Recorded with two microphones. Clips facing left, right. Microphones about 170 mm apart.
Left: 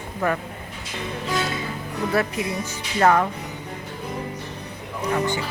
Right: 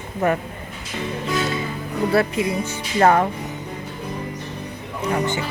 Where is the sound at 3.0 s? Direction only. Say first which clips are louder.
Right 2 dB; 35° right (ahead or behind).